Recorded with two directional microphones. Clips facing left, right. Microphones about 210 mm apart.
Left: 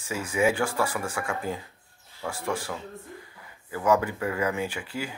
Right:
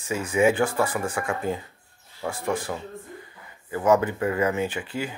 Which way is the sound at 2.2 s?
15° right (ahead or behind).